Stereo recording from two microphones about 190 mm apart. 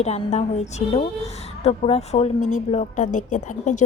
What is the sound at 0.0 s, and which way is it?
A woman's voice, 35° left (ahead or behind).